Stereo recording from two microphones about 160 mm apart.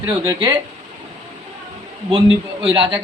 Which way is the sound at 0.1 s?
25° right (ahead or behind).